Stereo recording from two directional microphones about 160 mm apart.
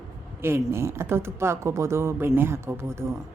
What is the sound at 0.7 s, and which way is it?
A woman's voice, 15° right (ahead or behind).